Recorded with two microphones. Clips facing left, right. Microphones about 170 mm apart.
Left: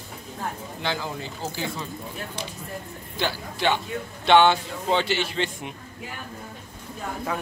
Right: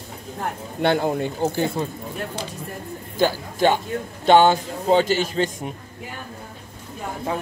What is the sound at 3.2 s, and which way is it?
Speech, 45° right (ahead or behind).